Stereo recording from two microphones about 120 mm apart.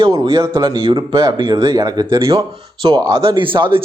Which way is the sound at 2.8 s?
45° right (ahead or behind).